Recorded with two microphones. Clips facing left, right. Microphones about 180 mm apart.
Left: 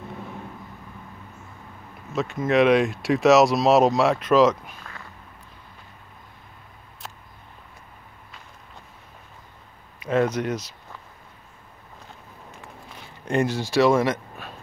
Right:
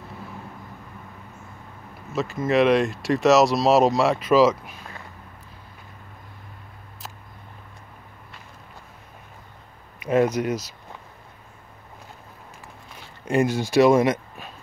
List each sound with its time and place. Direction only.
2.1 s speech: centre (ahead or behind)
10.0 s speech: 10° right (ahead or behind)
13.3 s speech: 10° right (ahead or behind)